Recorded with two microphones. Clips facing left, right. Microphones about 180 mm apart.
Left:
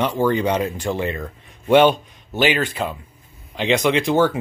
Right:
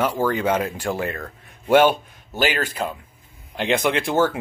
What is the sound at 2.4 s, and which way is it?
Speech, 45° right (ahead or behind).